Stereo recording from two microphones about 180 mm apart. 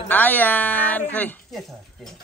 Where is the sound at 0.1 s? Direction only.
10° left (ahead or behind).